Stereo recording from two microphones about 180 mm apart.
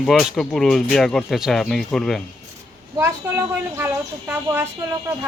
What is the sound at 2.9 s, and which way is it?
Speech, 15° right (ahead or behind).